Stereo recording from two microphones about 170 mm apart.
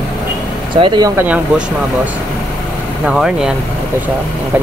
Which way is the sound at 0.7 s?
30° right (ahead or behind).